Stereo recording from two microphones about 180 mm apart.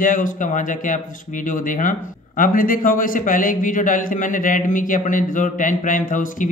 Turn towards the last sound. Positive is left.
turn(degrees=45)  # may be behind; listen again after turning